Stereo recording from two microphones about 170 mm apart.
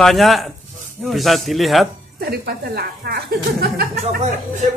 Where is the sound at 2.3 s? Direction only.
65° right (ahead or behind).